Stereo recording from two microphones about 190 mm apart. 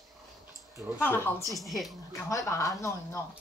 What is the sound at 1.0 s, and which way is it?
Speech, 10° left (ahead or behind).